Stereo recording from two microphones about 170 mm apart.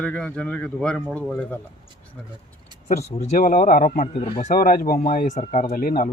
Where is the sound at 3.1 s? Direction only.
50° left (ahead or behind).